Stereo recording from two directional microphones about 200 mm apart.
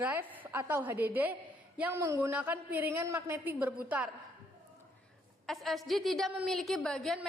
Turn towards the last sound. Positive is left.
turn(degrees=0)  # may be behind; listen again after turning